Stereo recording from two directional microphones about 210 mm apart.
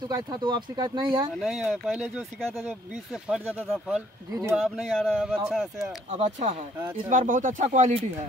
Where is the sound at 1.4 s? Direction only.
5° right (ahead or behind).